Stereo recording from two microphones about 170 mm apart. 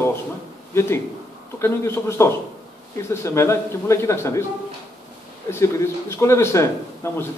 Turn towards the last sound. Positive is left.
turn(degrees=15)  # may be behind; listen again after turning